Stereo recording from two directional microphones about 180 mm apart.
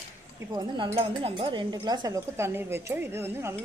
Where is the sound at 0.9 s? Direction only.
30° right (ahead or behind).